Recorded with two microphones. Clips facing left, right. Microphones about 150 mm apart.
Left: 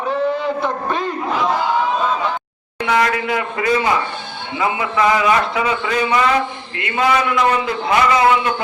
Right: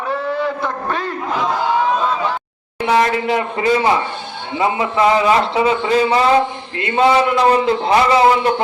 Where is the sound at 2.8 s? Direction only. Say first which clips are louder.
Right 2 dB; 30° right (ahead or behind).